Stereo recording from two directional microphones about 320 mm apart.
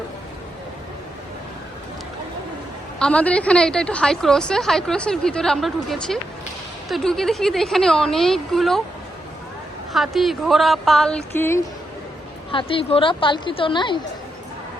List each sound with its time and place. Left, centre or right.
3.0 s a woman's voice: centre
9.9 s a woman's voice: centre